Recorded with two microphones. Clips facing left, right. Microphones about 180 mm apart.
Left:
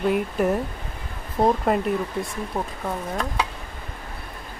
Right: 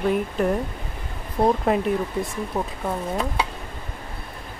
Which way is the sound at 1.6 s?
Centre (ahead or behind).